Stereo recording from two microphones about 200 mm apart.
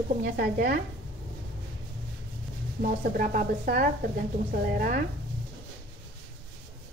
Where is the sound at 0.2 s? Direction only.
50° right (ahead or behind).